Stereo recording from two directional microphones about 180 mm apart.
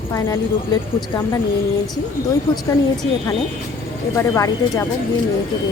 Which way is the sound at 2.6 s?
20° left (ahead or behind).